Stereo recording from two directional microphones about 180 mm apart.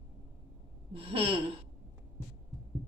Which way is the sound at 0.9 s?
30° right (ahead or behind).